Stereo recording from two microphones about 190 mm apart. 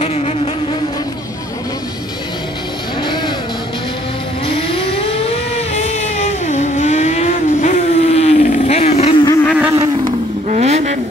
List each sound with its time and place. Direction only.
0.0 s insect: 35° left (ahead or behind)
3.0 s vehicle: 25° left (ahead or behind)
4.5 s a sound: 30° left (ahead or behind)
5.8 s vehicle: 35° left (ahead or behind)
9.6 s vehicle: 10° right (ahead or behind)
10.5 s vehicle: 40° right (ahead or behind)